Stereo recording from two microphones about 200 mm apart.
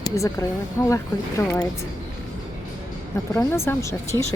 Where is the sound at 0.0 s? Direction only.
15° left (ahead or behind).